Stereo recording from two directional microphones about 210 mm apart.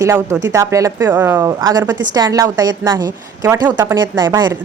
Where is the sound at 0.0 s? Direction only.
15° right (ahead or behind).